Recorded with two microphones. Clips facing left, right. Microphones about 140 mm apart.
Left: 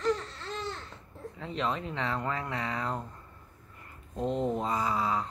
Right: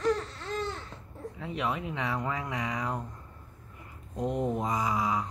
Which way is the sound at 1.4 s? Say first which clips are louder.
Even; 10° right (ahead or behind).